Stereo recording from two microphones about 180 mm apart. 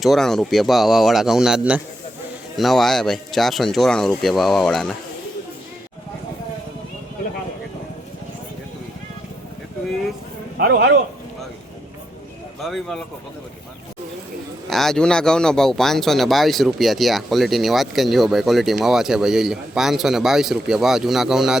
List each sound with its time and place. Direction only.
0.0 s speech: centre (ahead or behind)
10.6 s speech: 65° right (ahead or behind)
12.6 s speech: centre (ahead or behind)
14.7 s speech: centre (ahead or behind)